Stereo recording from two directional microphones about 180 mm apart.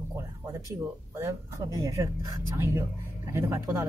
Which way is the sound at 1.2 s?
15° right (ahead or behind).